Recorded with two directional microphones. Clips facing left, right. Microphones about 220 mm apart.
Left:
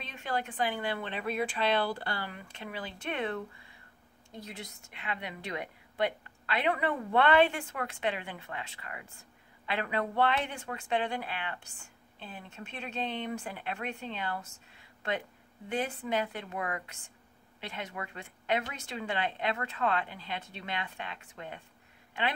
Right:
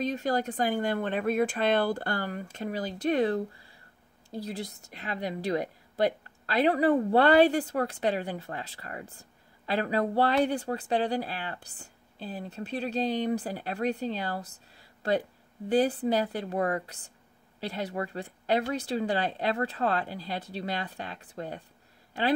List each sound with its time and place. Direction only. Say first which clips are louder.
0.0 s speech: right 8 dB; 40° right (ahead or behind)